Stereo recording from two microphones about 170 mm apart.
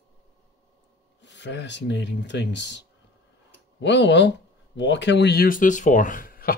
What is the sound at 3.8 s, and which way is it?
Speech, 90° left.